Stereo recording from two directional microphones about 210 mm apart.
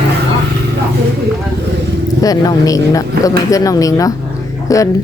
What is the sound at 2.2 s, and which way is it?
Speech, 15° left (ahead or behind).